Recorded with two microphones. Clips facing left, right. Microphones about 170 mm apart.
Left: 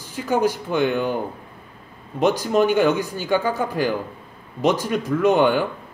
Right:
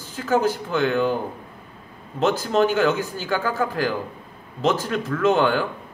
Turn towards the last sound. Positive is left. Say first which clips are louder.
# left 2 dB
turn(degrees=15)  # may be behind; listen again after turning